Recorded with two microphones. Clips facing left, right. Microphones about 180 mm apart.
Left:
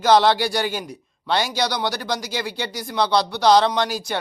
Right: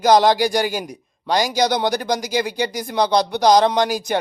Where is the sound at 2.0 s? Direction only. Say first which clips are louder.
Right 5 dB; 15° right (ahead or behind).